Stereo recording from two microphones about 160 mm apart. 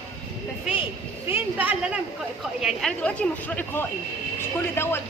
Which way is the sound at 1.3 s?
10° right (ahead or behind).